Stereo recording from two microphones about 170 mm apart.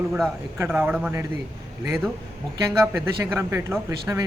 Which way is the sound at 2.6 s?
15° right (ahead or behind).